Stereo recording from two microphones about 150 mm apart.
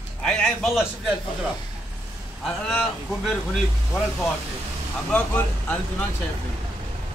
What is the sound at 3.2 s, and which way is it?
Speech, centre (ahead or behind).